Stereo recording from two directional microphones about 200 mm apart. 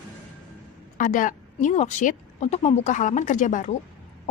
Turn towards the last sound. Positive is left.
turn(degrees=40)  # may be behind; listen again after turning